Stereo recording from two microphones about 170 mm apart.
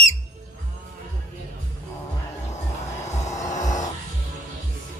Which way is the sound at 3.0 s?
40° left (ahead or behind).